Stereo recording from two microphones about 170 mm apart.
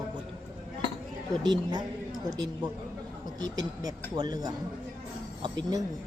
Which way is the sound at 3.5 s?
20° right (ahead or behind).